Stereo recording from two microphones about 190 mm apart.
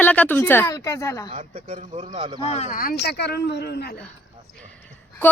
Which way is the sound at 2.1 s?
25° right (ahead or behind).